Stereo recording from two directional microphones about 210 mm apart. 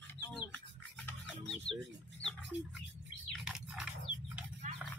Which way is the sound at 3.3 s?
Centre (ahead or behind).